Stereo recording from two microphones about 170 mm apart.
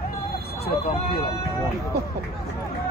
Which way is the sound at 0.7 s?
65° left (ahead or behind).